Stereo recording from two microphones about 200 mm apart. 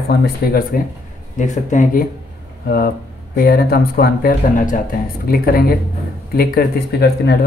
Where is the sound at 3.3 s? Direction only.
50° left (ahead or behind).